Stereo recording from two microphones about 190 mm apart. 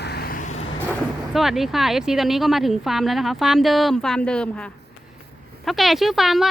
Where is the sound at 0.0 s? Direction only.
55° left (ahead or behind).